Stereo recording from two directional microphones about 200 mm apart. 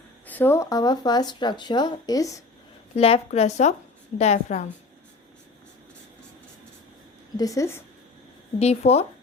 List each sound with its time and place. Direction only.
0.3 s speech: 10° left (ahead or behind)
2.9 s speech: 30° left (ahead or behind)
7.3 s a woman's voice: 15° left (ahead or behind)
8.5 s speech: 30° left (ahead or behind)